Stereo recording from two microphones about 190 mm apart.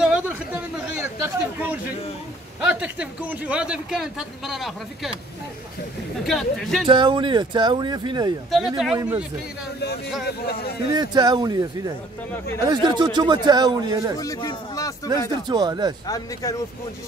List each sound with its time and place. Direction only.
0.0 s a sound: 5° right (ahead or behind)
0.9 s a man's voice: 10° right (ahead or behind)
6.2 s a man's voice: centre (ahead or behind)
6.9 s a man's voice: 25° right (ahead or behind)
8.5 s a man's voice: centre (ahead or behind)
10.2 s speech: 55° left (ahead or behind)
10.9 s a man's voice: 20° right (ahead or behind)
12.6 s a man's voice: 25° right (ahead or behind)
14.2 s speech: 20° left (ahead or behind)
15.4 s a man's voice: 20° right (ahead or behind)
16.1 s speech: 20° left (ahead or behind)